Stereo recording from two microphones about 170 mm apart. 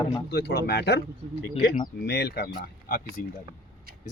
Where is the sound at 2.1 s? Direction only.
75° left (ahead or behind).